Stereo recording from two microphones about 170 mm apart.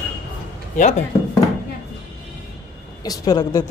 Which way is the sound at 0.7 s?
45° left (ahead or behind).